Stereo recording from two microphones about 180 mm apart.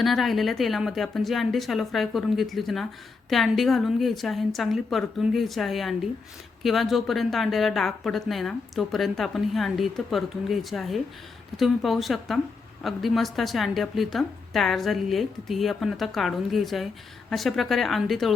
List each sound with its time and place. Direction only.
0.0 s a woman's voice: centre (ahead or behind)